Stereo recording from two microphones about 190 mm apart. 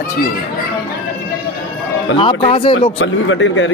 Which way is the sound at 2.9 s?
90° left.